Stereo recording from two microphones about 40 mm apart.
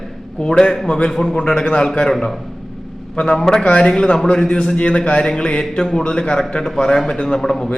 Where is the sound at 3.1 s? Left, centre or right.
Left.